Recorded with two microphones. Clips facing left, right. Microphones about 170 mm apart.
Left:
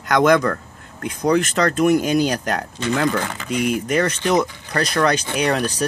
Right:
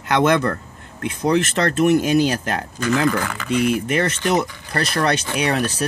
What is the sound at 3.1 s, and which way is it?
Speech, 25° left (ahead or behind).